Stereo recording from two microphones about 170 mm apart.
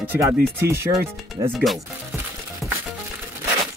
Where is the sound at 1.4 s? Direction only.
25° right (ahead or behind).